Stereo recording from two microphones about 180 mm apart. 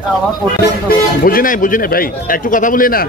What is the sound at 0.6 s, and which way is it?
Speech, 55° left (ahead or behind).